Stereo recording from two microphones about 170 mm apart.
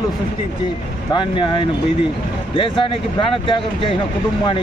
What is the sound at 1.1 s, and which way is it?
Speech, 30° left (ahead or behind).